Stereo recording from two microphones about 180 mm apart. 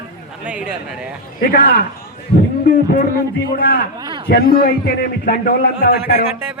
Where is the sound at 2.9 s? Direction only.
55° left (ahead or behind).